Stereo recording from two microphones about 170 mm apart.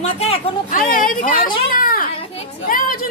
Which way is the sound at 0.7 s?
55° left (ahead or behind).